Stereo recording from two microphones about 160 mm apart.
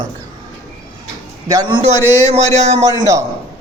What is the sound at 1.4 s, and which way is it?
Speech, 25° right (ahead or behind).